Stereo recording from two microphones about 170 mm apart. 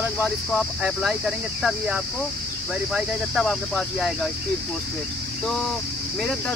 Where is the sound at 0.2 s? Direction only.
Centre (ahead or behind).